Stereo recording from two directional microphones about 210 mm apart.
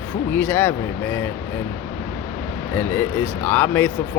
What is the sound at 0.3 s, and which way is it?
Speech, 10° left (ahead or behind).